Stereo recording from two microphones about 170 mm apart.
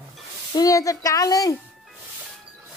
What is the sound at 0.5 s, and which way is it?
A child's voice, 20° left (ahead or behind).